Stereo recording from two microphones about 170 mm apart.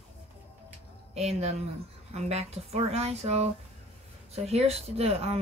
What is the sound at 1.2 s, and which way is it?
Speech, 40° right (ahead or behind).